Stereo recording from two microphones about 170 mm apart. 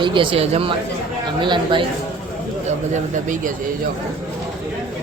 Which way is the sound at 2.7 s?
45° right (ahead or behind).